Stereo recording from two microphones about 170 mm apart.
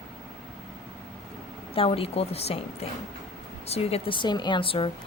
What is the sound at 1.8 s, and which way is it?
Speech, 35° left (ahead or behind).